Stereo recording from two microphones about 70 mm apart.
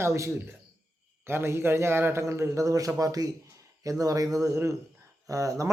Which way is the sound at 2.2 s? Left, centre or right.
Right.